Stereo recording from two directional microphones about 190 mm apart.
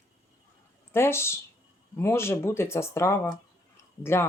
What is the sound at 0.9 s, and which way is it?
A woman's voice, 15° left (ahead or behind).